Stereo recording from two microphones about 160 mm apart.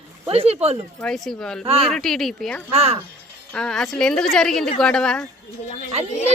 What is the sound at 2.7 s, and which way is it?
Speech, 40° right (ahead or behind).